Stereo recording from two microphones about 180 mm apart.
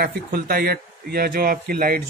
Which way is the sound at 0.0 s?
60° right (ahead or behind).